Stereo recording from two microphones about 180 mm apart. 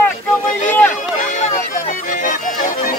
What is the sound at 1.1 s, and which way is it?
Speech, 45° left (ahead or behind).